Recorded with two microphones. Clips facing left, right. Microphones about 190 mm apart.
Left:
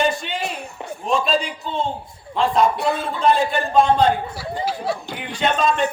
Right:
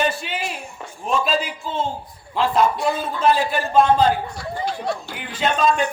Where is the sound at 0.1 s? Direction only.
5° right (ahead or behind).